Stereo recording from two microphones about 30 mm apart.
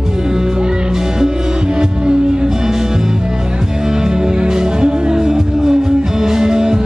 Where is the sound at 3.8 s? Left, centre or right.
Right.